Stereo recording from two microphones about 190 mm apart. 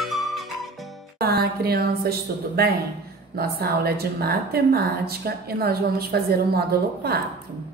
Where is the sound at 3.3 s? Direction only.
55° right (ahead or behind).